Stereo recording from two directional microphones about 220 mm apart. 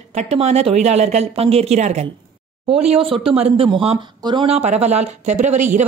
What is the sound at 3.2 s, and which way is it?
Speech, 25° right (ahead or behind).